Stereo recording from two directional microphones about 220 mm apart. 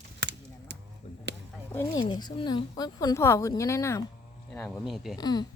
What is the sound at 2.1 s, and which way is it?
Speech, 20° left (ahead or behind).